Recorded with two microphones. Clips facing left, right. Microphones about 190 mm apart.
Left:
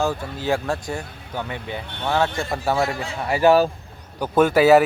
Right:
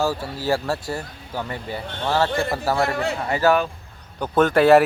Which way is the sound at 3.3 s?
15° left (ahead or behind).